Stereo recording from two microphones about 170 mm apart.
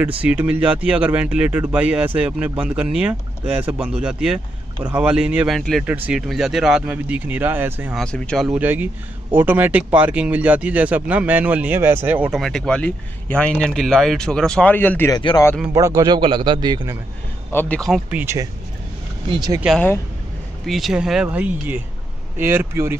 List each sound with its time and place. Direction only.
0.2 s speech: 10° right (ahead or behind)
5.9 s speech: 10° right (ahead or behind)
7.9 s speech: 5° left (ahead or behind)
8.5 s speech: 10° right (ahead or behind); by 15.1 s 10° left (ahead or behind)
15.1 s speech: 25° left (ahead or behind)
15.7 s a man's voice: 20° right (ahead or behind)
17.5 s speech: 10° left (ahead or behind)
18.1 s a man's voice: 15° right (ahead or behind)
20.6 s speech: centre (ahead or behind)